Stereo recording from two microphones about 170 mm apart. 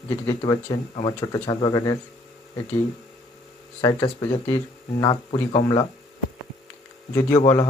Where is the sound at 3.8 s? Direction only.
25° left (ahead or behind).